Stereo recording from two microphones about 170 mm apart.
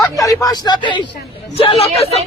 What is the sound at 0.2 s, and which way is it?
Speech, 20° left (ahead or behind).